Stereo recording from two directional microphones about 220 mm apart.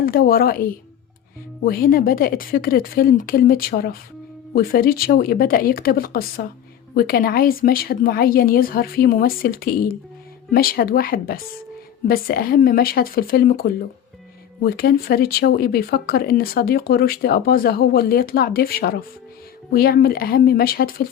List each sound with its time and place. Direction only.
0.0 s speech: 40° left (ahead or behind)